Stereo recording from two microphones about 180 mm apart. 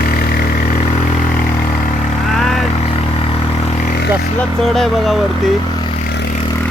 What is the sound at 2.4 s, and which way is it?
Vehicle, centre (ahead or behind).